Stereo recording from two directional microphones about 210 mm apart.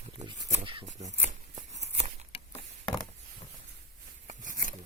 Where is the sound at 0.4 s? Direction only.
30° right (ahead or behind).